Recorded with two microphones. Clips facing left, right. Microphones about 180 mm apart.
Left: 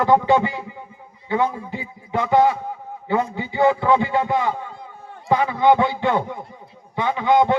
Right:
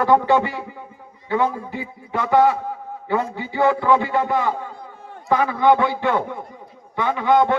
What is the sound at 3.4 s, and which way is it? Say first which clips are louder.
A man's voice: even; 20° left (ahead or behind).